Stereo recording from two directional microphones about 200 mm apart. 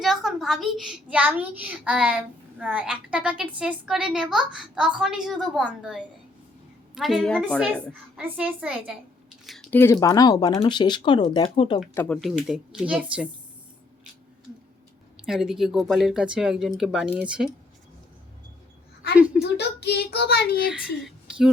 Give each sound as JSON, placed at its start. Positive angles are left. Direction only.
{"t": 0.0, "sound": "a woman's voice", "side_deg": 0}
{"t": 9.5, "sound": "a sound", "side_deg": 0}
{"t": 9.7, "sound": "speech", "side_deg": 15}
{"t": 11.9, "sound": "a woman's voice", "side_deg": 5}
{"t": 15.3, "sound": "a woman's voice", "side_deg": 0}
{"t": 19.4, "sound": "a child's voice", "side_deg": 55}
{"t": 21.0, "sound": "a sound", "side_deg": -5}